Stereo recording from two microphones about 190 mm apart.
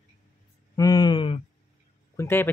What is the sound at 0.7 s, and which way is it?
Speech, 20° left (ahead or behind).